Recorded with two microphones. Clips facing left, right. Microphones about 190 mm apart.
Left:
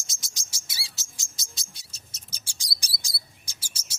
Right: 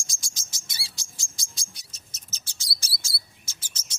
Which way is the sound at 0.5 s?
5° left (ahead or behind).